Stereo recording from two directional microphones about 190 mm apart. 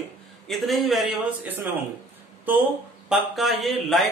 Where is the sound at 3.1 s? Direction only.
Centre (ahead or behind).